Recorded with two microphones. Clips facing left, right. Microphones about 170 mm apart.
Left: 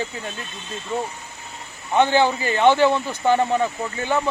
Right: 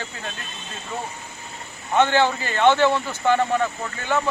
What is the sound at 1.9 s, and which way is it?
Speech, 15° left (ahead or behind).